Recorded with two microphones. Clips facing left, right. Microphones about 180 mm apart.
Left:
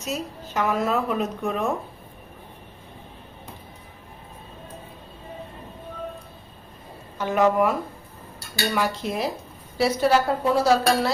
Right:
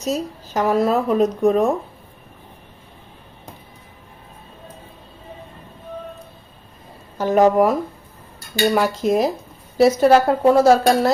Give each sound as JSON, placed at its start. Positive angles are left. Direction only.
{"t": 0.0, "sound": "a woman's voice", "side_deg": -35}
{"t": 7.2, "sound": "a woman's voice", "side_deg": -40}